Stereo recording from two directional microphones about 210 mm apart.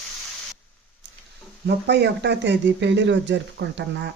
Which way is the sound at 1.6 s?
55° right (ahead or behind).